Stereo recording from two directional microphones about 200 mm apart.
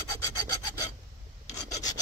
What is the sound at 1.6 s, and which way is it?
Filing, 15° left (ahead or behind).